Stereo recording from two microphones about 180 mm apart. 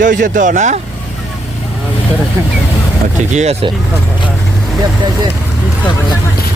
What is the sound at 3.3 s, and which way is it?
Speech, 35° right (ahead or behind).